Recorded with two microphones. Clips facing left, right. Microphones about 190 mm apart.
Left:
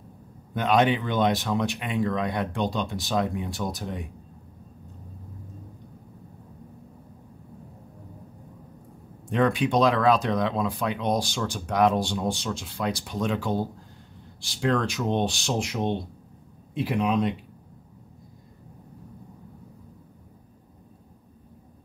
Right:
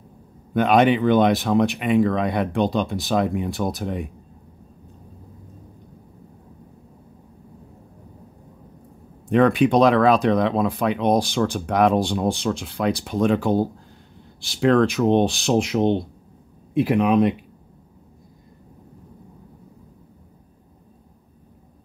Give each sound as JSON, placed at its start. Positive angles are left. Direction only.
{"t": 0.6, "sound": "speech", "side_deg": -60}
{"t": 9.3, "sound": "speech", "side_deg": -55}
{"t": 14.6, "sound": "speech", "side_deg": -55}